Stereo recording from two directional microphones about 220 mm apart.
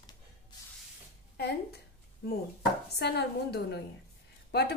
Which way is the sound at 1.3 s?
45° left (ahead or behind).